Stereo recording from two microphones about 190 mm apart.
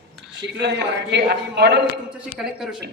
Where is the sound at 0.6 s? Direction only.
65° right (ahead or behind).